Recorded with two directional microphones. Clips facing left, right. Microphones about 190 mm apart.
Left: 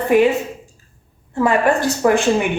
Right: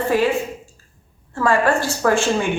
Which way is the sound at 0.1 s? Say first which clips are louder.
Left 6 dB; 20° left (ahead or behind).